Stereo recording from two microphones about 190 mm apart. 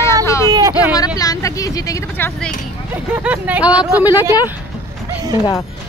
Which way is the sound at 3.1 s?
10° right (ahead or behind).